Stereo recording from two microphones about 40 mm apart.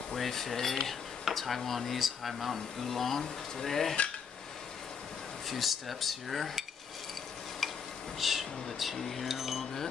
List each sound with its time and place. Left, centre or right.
0.1 s speech: centre
5.5 s speech: centre
7.6 s stir: centre
8.2 s speech: centre